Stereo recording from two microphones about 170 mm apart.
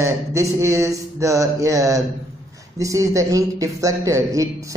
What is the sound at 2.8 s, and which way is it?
Speech, 20° right (ahead or behind).